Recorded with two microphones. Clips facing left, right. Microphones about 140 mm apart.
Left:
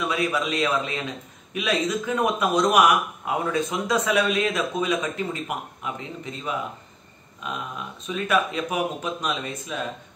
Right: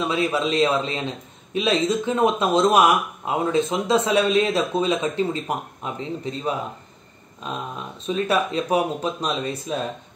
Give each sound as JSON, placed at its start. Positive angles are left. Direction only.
{"t": 0.0, "sound": "a man's voice", "side_deg": -30}